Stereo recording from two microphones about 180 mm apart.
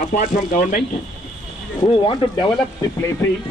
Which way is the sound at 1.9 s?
25° left (ahead or behind).